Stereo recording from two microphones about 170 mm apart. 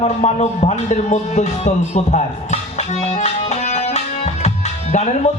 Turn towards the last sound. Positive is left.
turn(degrees=40)  # may be behind; listen again after turning